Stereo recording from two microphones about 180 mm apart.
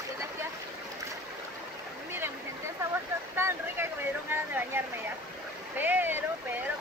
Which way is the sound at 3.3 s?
15° right (ahead or behind).